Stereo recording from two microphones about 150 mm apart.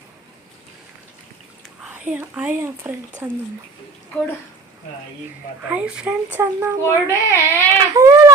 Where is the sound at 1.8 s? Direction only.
10° right (ahead or behind).